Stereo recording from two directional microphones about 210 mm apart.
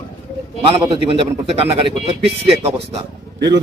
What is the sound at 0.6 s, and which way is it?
A man's voice, 25° right (ahead or behind).